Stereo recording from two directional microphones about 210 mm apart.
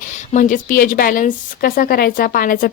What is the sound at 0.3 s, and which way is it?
Speech, 40° left (ahead or behind).